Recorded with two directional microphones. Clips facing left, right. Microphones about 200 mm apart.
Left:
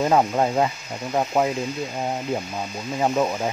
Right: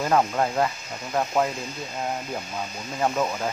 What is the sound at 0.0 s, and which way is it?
Speech, 20° left (ahead or behind).